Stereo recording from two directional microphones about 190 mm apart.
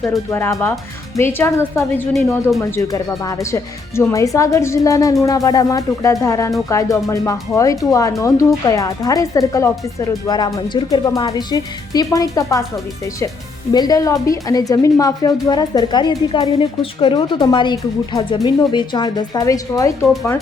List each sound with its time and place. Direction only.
0.0 s speech: 10° left (ahead or behind)
2.1 s speech: centre (ahead or behind)
2.6 s speech: 15° left (ahead or behind)
13.7 s a woman's voice: 20° left (ahead or behind)